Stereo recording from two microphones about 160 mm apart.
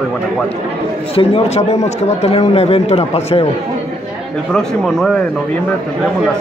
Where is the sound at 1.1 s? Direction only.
40° left (ahead or behind).